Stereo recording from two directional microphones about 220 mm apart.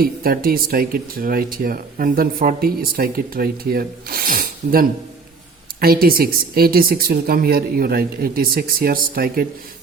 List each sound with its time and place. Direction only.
0.0 s speech: 40° right (ahead or behind)